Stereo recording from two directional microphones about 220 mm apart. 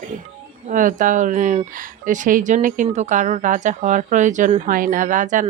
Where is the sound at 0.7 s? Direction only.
35° right (ahead or behind).